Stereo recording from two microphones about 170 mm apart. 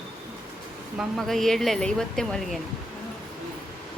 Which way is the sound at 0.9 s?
Centre (ahead or behind).